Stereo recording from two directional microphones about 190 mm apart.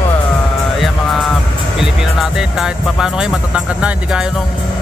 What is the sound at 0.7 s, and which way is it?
Music, centre (ahead or behind).